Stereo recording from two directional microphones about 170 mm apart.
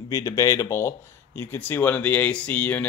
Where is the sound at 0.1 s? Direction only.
20° left (ahead or behind).